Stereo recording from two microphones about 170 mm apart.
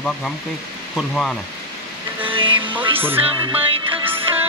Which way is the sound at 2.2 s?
30° right (ahead or behind).